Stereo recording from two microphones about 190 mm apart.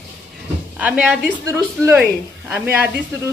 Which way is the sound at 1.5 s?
15° right (ahead or behind).